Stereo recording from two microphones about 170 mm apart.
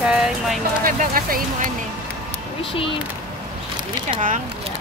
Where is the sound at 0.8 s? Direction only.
55° right (ahead or behind).